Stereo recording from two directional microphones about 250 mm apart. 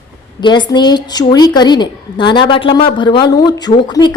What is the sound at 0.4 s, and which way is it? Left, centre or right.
A woman's voice, centre.